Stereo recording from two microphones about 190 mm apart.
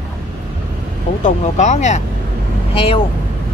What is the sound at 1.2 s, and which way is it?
Speech, 40° left (ahead or behind).